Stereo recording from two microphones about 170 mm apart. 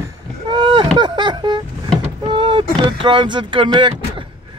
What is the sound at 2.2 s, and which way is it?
Vehicle, 30° right (ahead or behind).